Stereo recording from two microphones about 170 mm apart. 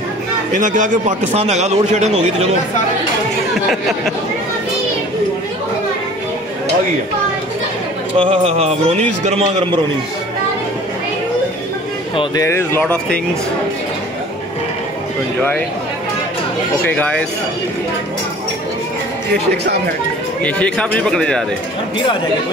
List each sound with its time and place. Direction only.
0.5 s a man's voice: 45° right (ahead or behind)
8.2 s a man's voice: 40° right (ahead or behind)
12.4 s speech: 15° left (ahead or behind)
16.8 s speech: 10° left (ahead or behind)
19.3 s speech: 70° right (ahead or behind)
20.4 s speech: 5° left (ahead or behind)